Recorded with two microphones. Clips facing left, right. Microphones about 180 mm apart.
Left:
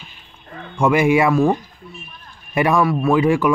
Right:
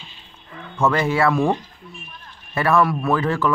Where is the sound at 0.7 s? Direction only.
15° left (ahead or behind).